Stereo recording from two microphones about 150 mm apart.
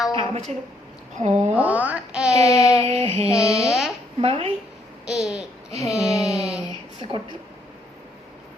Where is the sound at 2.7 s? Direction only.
45° right (ahead or behind).